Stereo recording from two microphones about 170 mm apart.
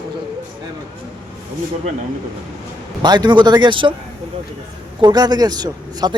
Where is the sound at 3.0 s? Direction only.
25° right (ahead or behind).